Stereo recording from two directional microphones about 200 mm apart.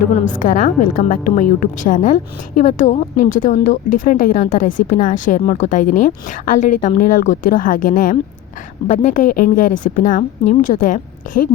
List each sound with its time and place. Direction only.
0.1 s a woman's voice: 35° left (ahead or behind)